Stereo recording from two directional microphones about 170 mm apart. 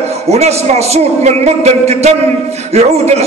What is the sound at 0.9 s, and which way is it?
A man's voice, 40° right (ahead or behind).